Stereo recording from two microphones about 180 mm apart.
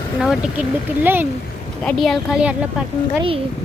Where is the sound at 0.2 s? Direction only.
Centre (ahead or behind).